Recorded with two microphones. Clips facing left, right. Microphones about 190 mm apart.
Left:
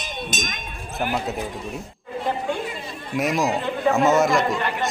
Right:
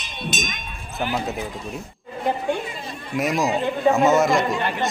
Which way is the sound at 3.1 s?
Centre (ahead or behind).